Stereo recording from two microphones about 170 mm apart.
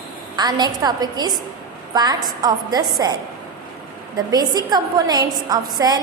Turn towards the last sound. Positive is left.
turn(degrees=-25)  # may be behind; listen again after turning